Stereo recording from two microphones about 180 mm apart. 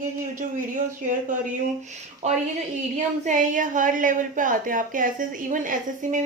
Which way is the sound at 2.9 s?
45° right (ahead or behind).